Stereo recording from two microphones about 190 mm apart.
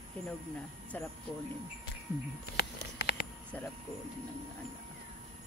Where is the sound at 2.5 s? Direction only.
60° left (ahead or behind).